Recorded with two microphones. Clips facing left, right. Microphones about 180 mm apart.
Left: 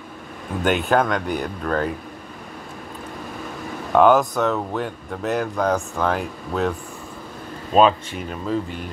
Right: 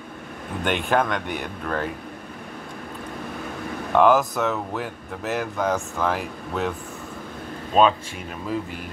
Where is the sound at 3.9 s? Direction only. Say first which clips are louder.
Left 2 dB; centre (ahead or behind).